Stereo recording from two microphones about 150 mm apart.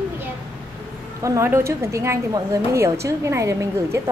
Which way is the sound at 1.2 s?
20° right (ahead or behind).